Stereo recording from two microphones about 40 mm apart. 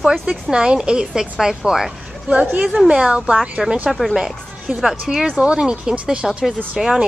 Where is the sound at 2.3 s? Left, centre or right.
Right.